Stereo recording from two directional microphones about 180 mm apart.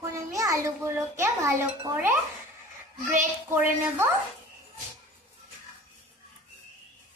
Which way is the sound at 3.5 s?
10° right (ahead or behind).